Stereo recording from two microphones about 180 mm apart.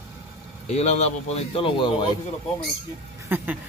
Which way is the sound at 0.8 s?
40° left (ahead or behind).